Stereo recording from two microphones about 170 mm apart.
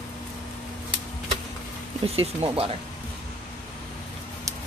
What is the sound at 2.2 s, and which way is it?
Speech, 35° right (ahead or behind).